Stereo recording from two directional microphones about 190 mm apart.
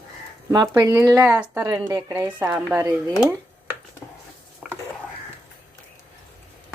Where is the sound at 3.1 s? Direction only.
10° right (ahead or behind).